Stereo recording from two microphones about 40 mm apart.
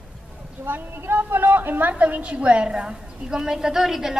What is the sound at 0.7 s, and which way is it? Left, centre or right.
A woman's voice, right.